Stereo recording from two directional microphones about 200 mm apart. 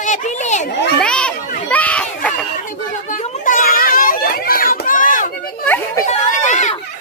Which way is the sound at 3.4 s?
45° left (ahead or behind).